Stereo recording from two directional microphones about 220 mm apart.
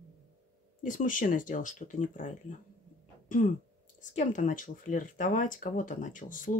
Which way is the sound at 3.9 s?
35° left (ahead or behind).